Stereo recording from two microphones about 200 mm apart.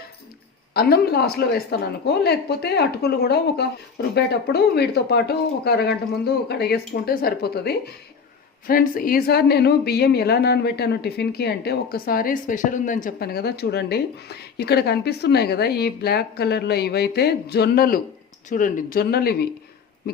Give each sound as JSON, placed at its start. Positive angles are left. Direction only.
{"t": 0.7, "sound": "a woman's voice", "side_deg": 50}